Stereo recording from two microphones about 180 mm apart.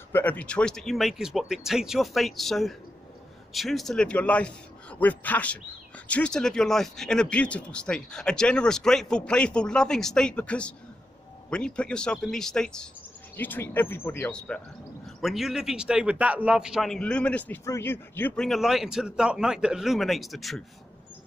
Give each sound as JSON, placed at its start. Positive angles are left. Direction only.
{"t": 0.1, "sound": "a man's voice", "side_deg": 10}